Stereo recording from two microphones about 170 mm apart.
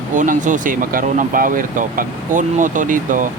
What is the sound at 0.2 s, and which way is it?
Speech, 50° right (ahead or behind).